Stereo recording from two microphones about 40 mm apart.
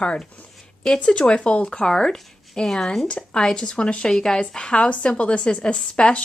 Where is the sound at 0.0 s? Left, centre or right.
Left.